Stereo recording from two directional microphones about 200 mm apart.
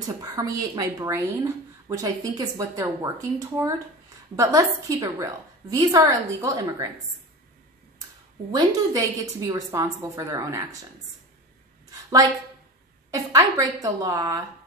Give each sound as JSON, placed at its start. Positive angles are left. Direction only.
{"t": 0.2, "sound": "speech", "side_deg": -15}
{"t": 8.5, "sound": "a woman's voice", "side_deg": -20}
{"t": 11.9, "sound": "a sound", "side_deg": -20}
{"t": 13.1, "sound": "speech", "side_deg": -15}